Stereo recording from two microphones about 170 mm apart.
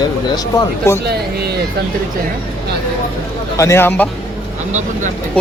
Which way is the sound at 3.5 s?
15° left (ahead or behind).